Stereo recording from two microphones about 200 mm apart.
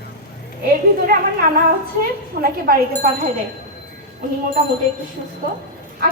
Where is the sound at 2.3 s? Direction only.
45° right (ahead or behind).